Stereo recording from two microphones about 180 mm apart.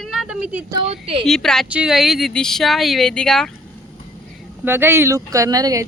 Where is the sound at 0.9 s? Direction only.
30° right (ahead or behind).